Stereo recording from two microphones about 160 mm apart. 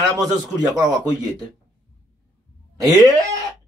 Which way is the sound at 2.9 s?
25° right (ahead or behind).